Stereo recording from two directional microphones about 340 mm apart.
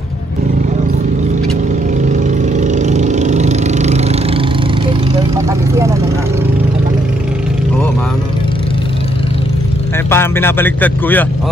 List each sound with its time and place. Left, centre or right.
2.0 s vehicle: right
10.0 s speech: centre